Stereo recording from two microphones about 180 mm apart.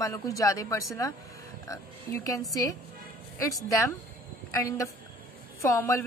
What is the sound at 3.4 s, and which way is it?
A woman's voice, 20° left (ahead or behind).